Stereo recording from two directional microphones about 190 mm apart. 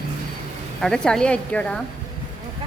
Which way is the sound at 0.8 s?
5° left (ahead or behind).